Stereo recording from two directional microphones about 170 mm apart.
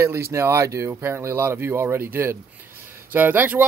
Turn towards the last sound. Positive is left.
turn(degrees=-10)  # may be behind; listen again after turning